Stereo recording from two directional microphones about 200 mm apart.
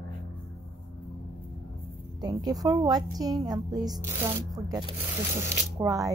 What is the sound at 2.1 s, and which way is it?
A woman's voice, 20° right (ahead or behind).